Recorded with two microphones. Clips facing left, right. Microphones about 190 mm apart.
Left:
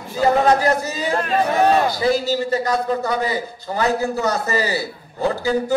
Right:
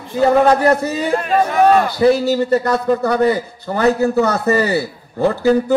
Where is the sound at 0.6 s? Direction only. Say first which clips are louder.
Right 5 dB; 60° right (ahead or behind).